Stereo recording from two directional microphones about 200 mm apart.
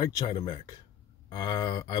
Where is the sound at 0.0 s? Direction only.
20° left (ahead or behind).